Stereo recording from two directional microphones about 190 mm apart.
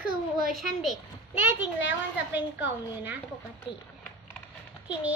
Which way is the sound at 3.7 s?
25° left (ahead or behind).